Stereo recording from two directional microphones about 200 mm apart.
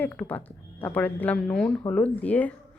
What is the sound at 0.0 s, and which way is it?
A woman's voice, 10° left (ahead or behind).